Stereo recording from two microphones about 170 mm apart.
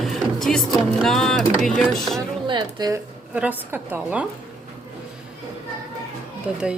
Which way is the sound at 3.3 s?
10° right (ahead or behind).